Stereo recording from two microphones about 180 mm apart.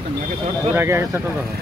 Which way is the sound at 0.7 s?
15° right (ahead or behind).